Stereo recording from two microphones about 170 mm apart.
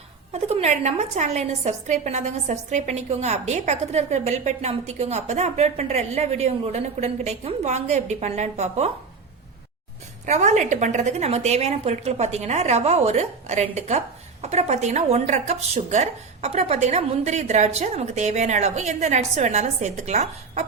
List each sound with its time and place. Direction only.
0.3 s a woman's voice: 40° right (ahead or behind)
10.2 s a woman's voice: 45° right (ahead or behind)